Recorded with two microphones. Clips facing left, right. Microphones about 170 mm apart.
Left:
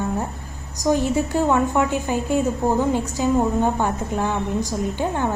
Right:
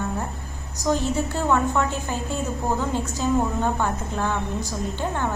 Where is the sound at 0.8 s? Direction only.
15° left (ahead or behind).